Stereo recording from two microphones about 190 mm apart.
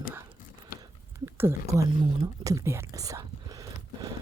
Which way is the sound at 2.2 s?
15° right (ahead or behind).